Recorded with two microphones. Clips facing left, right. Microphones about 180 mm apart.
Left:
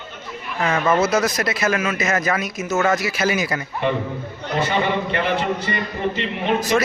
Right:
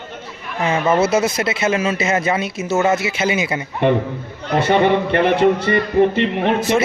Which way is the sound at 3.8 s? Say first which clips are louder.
Right 7 dB; 55° right (ahead or behind).